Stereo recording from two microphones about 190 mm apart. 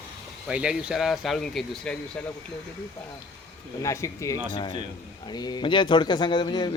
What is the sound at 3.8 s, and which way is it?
A man's voice, 15° left (ahead or behind).